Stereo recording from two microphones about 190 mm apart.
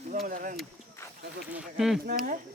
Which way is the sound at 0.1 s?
45° right (ahead or behind).